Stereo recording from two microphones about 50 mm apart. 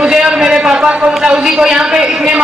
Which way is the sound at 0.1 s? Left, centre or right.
Centre.